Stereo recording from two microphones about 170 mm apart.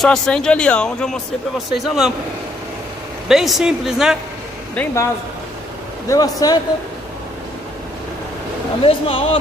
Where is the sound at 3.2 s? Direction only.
Centre (ahead or behind).